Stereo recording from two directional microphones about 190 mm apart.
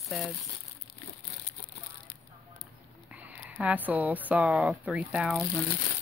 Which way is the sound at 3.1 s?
5° right (ahead or behind).